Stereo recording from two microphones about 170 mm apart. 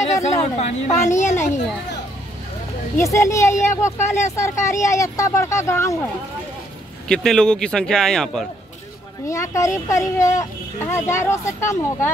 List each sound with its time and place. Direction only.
0.0 s a sound: 40° left (ahead or behind)
0.6 s a woman's voice: 40° left (ahead or behind)
3.0 s speech: 20° left (ahead or behind)
7.1 s speech: 5° left (ahead or behind)
9.3 s speech: 20° left (ahead or behind)